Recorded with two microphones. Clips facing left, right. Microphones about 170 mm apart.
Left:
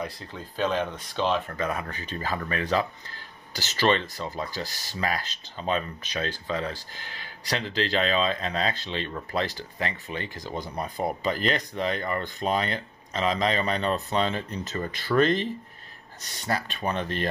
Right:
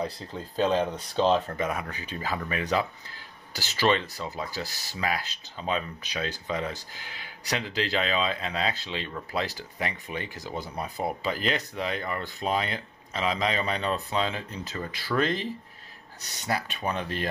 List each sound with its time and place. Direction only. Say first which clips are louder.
0.0 s speech: right 2 dB; 30° right (ahead or behind)
1.7 s speech: left 1 dB; 10° right (ahead or behind)
16.4 s speech: left 1 dB; 10° right (ahead or behind)